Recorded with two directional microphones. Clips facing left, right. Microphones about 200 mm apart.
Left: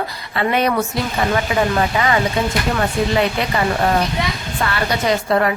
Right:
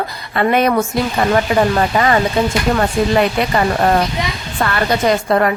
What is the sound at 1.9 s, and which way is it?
Speech, 45° right (ahead or behind).